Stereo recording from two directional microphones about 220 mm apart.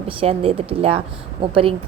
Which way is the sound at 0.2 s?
25° right (ahead or behind).